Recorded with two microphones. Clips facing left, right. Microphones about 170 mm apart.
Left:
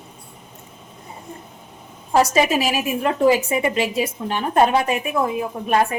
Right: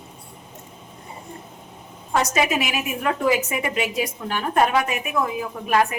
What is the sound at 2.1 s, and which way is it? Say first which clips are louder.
A woman's voice: left 4 dB; 30° left (ahead or behind).